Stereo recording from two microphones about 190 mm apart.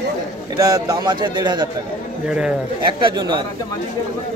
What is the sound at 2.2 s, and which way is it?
Speech, 5° right (ahead or behind).